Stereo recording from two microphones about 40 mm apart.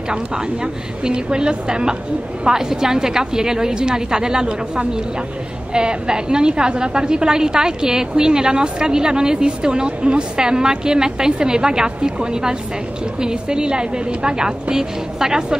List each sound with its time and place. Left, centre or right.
1.0 s a woman's voice: right